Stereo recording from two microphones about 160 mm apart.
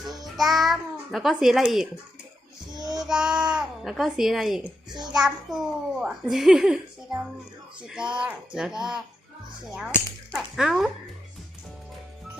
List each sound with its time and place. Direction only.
0.3 s a child's voice: centre (ahead or behind)
2.7 s child singing: 25° right (ahead or behind)
3.0 s a child's voice: 5° right (ahead or behind)
10.3 s a child's voice: centre (ahead or behind)